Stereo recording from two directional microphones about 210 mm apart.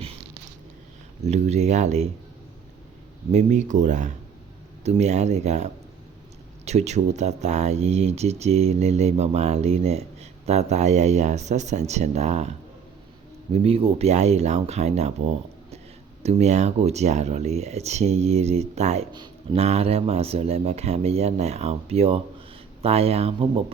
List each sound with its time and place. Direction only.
1.2 s speech: 30° right (ahead or behind)
3.3 s speech: 35° right (ahead or behind)